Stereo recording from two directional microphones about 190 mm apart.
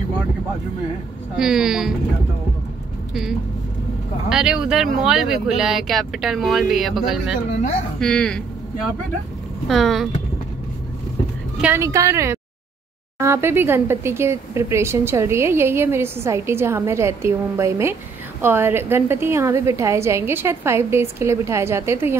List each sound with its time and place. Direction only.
1.3 s speech: centre (ahead or behind)
3.1 s speech: centre (ahead or behind)
9.7 s speech: centre (ahead or behind)
11.5 s speech: 10° right (ahead or behind)